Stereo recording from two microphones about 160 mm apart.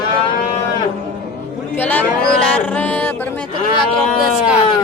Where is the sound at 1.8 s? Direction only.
10° left (ahead or behind).